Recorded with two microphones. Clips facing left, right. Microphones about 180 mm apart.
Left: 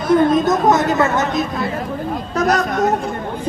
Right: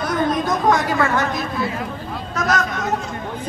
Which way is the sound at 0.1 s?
25° left (ahead or behind).